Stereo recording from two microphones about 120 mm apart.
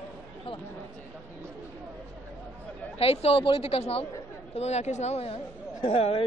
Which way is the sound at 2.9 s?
55° left (ahead or behind).